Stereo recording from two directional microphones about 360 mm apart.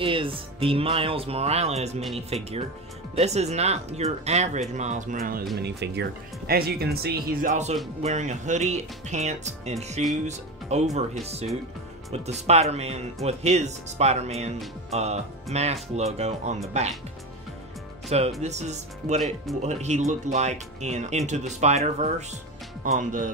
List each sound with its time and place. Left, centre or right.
0.0 s speech: centre
18.4 s speech: centre